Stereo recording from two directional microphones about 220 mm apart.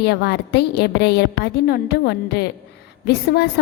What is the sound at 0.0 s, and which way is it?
A woman's voice, 50° left (ahead or behind).